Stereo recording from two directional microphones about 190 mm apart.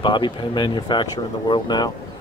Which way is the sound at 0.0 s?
25° left (ahead or behind).